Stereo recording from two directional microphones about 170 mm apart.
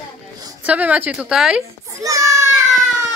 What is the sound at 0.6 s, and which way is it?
Speech, 10° right (ahead or behind).